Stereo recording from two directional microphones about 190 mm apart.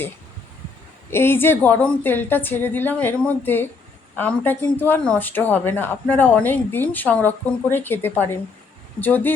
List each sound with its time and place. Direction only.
1.1 s speech: 10° left (ahead or behind)